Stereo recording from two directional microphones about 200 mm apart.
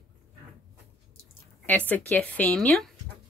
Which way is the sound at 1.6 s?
10° left (ahead or behind).